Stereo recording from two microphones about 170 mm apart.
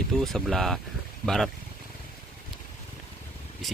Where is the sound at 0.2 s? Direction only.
Centre (ahead or behind).